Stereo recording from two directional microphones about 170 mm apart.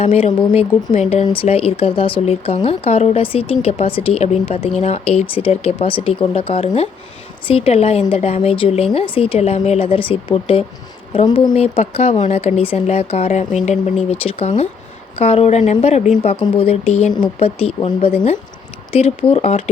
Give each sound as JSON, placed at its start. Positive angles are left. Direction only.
{"t": 0.0, "sound": "speech", "side_deg": 40}
{"t": 11.5, "sound": "speech", "side_deg": 35}